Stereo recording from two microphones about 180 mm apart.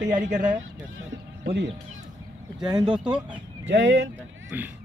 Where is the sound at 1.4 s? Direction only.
65° right (ahead or behind).